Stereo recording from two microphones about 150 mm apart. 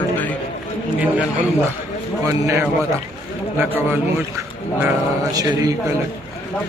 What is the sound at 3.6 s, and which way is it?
Speech, 15° right (ahead or behind).